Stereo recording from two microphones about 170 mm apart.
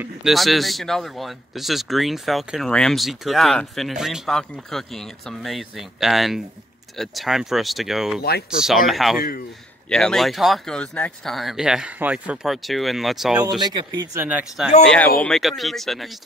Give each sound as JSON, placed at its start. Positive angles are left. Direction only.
{"t": 0.0, "sound": "speech", "side_deg": 0}
{"t": 8.2, "sound": "speech", "side_deg": 65}
{"t": 8.5, "sound": "speech", "side_deg": 0}
{"t": 13.6, "sound": "speech", "side_deg": -25}
{"t": 14.2, "sound": "speech", "side_deg": -10}
{"t": 15.2, "sound": "speech", "side_deg": 0}